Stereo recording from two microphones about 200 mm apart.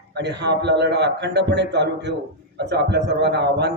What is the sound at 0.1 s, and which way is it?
A man's voice, 55° right (ahead or behind).